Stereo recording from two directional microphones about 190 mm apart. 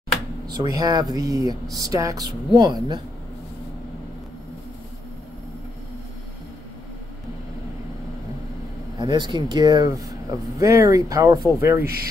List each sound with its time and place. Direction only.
0.5 s speech: 20° right (ahead or behind)
8.9 s speech: 25° right (ahead or behind)